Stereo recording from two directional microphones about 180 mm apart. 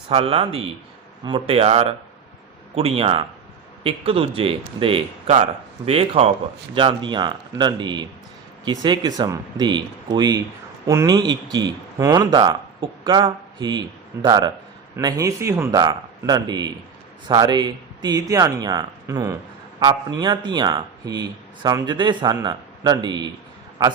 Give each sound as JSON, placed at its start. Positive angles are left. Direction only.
{"t": 0.1, "sound": "a man's voice", "side_deg": -35}